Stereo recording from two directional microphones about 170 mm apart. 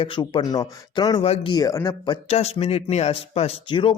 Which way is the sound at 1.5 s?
20° left (ahead or behind).